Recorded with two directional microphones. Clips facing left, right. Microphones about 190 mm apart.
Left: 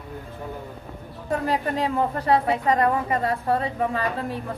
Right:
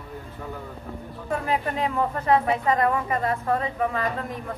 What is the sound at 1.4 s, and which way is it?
A woman's voice, 35° left (ahead or behind).